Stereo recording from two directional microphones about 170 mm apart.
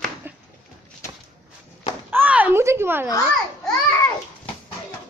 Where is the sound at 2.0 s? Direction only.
10° right (ahead or behind).